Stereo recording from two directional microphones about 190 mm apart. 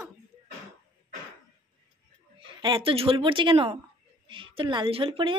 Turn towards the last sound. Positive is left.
turn(degrees=-30)  # may be behind; listen again after turning